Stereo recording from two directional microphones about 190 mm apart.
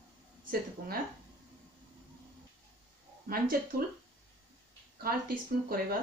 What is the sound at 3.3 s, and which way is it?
Speech, 50° right (ahead or behind).